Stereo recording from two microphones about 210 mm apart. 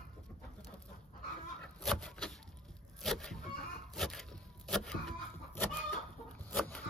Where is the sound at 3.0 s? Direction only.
Centre (ahead or behind).